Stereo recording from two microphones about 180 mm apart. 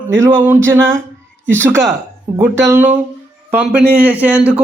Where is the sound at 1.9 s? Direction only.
15° right (ahead or behind).